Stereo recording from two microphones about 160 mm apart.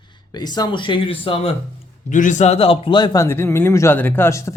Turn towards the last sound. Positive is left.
turn(degrees=20)  # may be behind; listen again after turning